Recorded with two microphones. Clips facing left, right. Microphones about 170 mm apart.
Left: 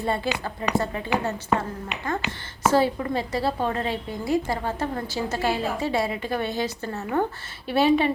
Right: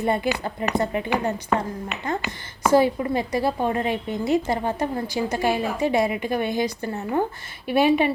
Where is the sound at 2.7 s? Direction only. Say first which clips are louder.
Right 4 dB; 15° right (ahead or behind).